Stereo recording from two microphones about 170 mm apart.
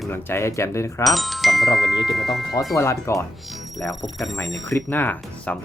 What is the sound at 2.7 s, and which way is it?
Speech, 20° left (ahead or behind).